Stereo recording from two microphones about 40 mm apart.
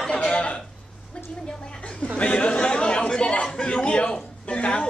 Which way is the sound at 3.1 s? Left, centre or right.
Left.